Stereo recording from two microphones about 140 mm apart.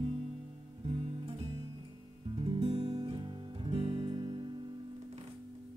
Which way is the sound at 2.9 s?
30° right (ahead or behind).